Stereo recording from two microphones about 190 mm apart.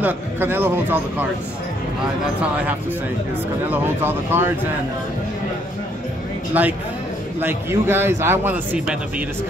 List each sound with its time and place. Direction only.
0.0 s a man's voice: 10° right (ahead or behind)
3.7 s a man's voice: 10° right (ahead or behind)
6.5 s a man's voice: 10° right (ahead or behind)